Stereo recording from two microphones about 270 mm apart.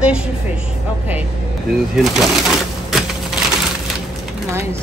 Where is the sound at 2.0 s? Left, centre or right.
Centre.